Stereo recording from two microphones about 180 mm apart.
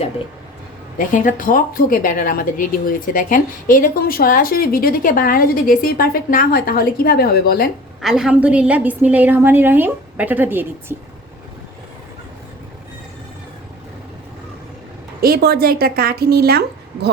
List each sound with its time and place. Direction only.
0.9 s a woman's voice: 45° left (ahead or behind)
8.0 s a woman's voice: 5° right (ahead or behind)
15.2 s speech: 60° right (ahead or behind)